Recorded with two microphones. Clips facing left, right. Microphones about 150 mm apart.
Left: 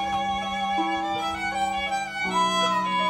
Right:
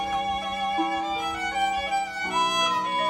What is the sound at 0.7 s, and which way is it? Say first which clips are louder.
Violin: left 1 dB; centre (ahead or behind).